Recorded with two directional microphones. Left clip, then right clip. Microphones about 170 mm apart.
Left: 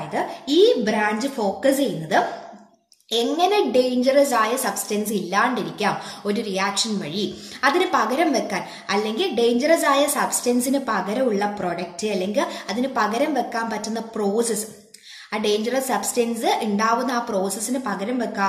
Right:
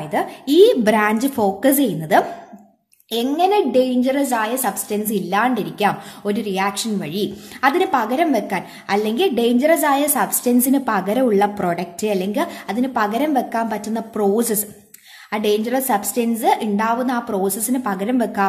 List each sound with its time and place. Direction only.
0.1 s a woman's voice: 45° right (ahead or behind)